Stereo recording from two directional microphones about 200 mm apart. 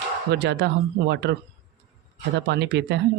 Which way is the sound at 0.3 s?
60° right (ahead or behind).